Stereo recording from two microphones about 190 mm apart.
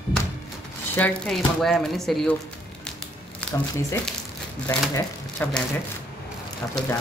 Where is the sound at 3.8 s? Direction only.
15° left (ahead or behind).